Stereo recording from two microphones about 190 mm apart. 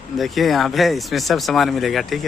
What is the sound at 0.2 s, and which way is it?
A man's voice, centre (ahead or behind).